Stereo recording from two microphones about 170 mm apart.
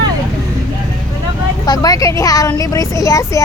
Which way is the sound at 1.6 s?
20° left (ahead or behind).